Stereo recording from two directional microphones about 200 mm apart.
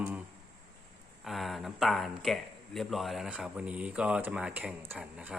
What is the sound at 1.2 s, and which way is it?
Speech, centre (ahead or behind).